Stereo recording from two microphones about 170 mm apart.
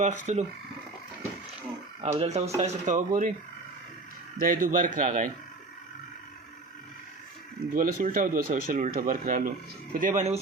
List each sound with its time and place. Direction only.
0.0 s speech: 45° right (ahead or behind)
2.0 s speech: 35° right (ahead or behind); by 3.3 s 55° right (ahead or behind)
4.4 s speech: 55° right (ahead or behind)
7.7 s speech: 55° right (ahead or behind)